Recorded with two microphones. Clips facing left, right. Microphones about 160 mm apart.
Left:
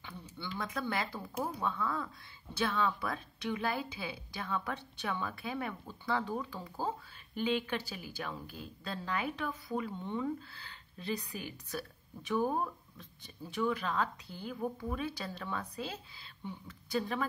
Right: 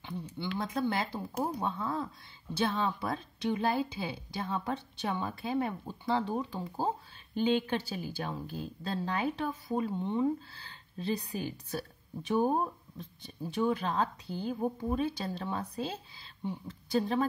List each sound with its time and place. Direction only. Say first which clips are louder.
0.6 s a woman's voice: right 4 dB; 25° right (ahead or behind)